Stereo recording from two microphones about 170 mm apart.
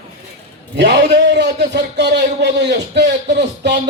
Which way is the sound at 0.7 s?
90° right.